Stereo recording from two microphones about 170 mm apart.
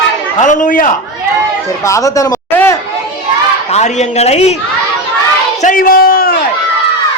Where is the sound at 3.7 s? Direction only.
45° left (ahead or behind).